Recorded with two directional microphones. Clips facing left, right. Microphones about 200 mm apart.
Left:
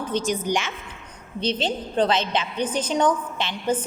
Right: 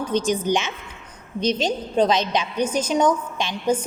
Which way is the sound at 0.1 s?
15° right (ahead or behind).